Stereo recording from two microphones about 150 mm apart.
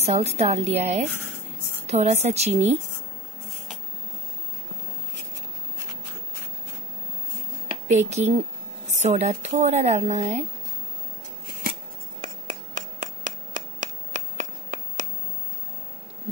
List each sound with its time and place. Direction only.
0.0 s a woman's voice: 45° right (ahead or behind)
7.9 s a woman's voice: 50° right (ahead or behind)
12.2 s a sound: 60° right (ahead or behind)